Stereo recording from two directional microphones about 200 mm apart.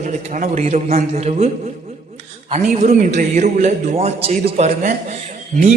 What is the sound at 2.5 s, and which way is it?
A man's voice, 35° right (ahead or behind).